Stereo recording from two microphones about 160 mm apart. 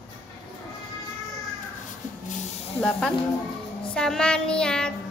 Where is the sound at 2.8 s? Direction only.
Centre (ahead or behind).